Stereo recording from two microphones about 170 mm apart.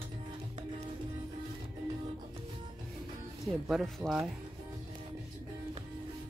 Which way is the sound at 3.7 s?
Centre (ahead or behind).